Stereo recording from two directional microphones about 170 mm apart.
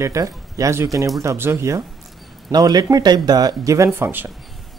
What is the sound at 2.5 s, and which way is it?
Speech, 25° right (ahead or behind).